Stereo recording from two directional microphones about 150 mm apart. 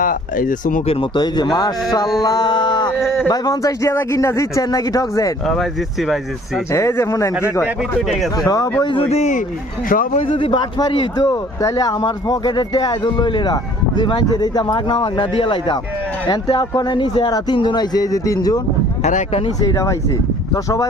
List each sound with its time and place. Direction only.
0.0 s speech: 65° left (ahead or behind)
0.9 s speech: 35° left (ahead or behind)
2.2 s music: 25° left (ahead or behind)
3.0 s a sound: centre (ahead or behind)
3.2 s speech: 25° left (ahead or behind)
5.5 s speech: centre (ahead or behind)
6.7 s speech: 20° left (ahead or behind)
7.9 s speech: centre (ahead or behind)
8.4 s speech: 25° left (ahead or behind)
8.8 s speech: 35° left (ahead or behind)
9.9 s speech: 65° left (ahead or behind)
10.2 s speech: 35° left (ahead or behind)
19.0 s speech: 50° left (ahead or behind)
19.7 s speech: 20° left (ahead or behind)